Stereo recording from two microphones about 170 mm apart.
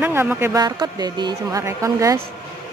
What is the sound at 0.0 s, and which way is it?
Speech, 10° right (ahead or behind).